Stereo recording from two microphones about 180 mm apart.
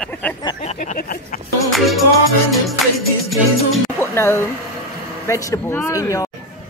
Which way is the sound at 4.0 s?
15° left (ahead or behind).